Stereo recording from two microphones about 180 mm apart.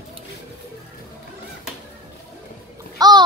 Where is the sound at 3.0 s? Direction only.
25° right (ahead or behind).